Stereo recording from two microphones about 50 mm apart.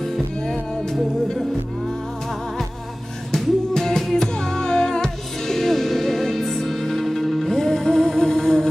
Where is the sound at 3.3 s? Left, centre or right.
Centre.